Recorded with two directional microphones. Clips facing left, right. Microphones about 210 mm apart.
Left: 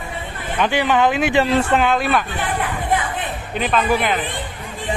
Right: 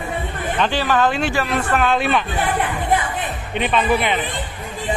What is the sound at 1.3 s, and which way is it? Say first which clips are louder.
Speech: left 4 dB; 25° left (ahead or behind).